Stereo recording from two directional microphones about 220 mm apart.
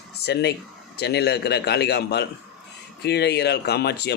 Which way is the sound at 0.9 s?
50° left (ahead or behind).